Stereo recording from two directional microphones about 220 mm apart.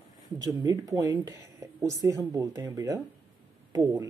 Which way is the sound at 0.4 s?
15° right (ahead or behind).